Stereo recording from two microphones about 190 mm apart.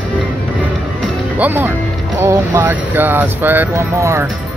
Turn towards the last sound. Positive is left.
turn(degrees=-15)  # may be behind; listen again after turning